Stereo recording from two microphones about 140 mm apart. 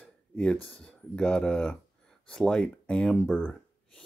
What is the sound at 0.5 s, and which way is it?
Speech, 40° left (ahead or behind).